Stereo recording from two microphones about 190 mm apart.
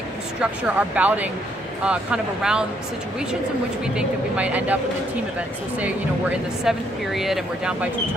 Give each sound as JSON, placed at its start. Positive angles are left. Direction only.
{"t": 0.8, "sound": "speech", "side_deg": -10}
{"t": 3.9, "sound": "speech", "side_deg": -5}
{"t": 6.7, "sound": "speech", "side_deg": 0}